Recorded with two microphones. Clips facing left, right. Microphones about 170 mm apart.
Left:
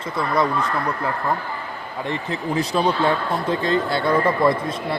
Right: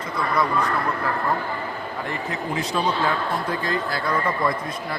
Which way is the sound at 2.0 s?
30° left (ahead or behind).